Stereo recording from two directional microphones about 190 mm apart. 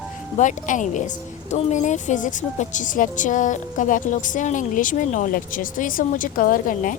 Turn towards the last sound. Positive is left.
turn(degrees=45)  # may be behind; listen again after turning